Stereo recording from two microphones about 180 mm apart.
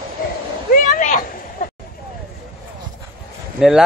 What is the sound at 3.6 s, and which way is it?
Speech, 5° right (ahead or behind).